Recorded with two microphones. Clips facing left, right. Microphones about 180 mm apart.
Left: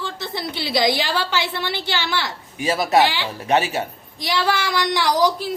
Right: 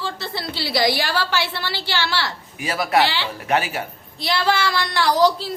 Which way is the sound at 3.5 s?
25° left (ahead or behind).